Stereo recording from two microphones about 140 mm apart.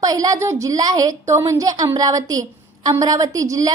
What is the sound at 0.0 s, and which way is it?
A woman's voice, 25° right (ahead or behind).